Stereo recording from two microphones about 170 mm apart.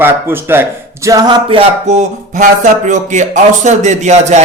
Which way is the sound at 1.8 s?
45° right (ahead or behind).